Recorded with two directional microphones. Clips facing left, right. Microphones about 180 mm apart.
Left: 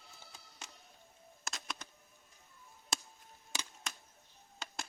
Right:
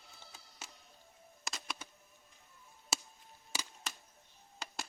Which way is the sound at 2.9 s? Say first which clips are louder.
Right 1 dB; 5° right (ahead or behind).